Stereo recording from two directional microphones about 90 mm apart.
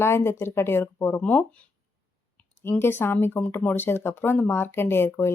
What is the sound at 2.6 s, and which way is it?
Speech, 25° left (ahead or behind).